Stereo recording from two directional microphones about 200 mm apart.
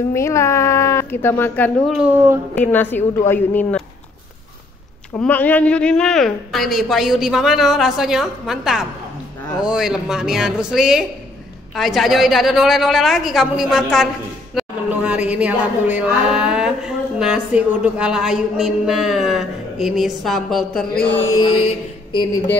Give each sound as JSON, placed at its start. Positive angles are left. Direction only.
{"t": 0.1, "sound": "speech", "side_deg": 15}
{"t": 5.1, "sound": "a woman's voice", "side_deg": 10}
{"t": 14.5, "sound": "a sound", "side_deg": -5}
{"t": 21.3, "sound": "mantra", "side_deg": 20}
{"t": 22.1, "sound": "speech", "side_deg": 20}